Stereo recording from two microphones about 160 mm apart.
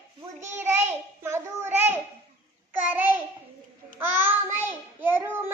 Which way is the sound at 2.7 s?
10° right (ahead or behind).